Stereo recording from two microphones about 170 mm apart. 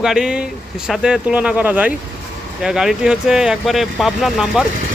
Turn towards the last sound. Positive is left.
turn(degrees=0)  # may be behind; listen again after turning